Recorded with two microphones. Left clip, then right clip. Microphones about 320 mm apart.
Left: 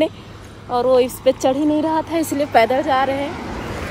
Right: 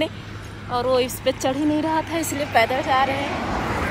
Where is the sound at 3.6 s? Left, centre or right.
Centre.